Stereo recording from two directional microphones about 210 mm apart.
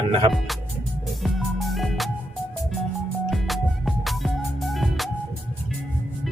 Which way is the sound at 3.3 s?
Centre (ahead or behind).